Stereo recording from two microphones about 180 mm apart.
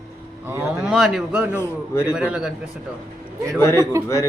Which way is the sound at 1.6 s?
15° left (ahead or behind).